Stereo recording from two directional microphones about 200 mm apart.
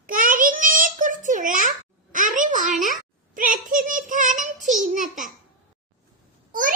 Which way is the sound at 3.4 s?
40° right (ahead or behind).